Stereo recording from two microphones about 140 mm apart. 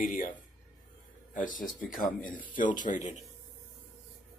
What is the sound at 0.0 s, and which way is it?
Speech, 75° left (ahead or behind).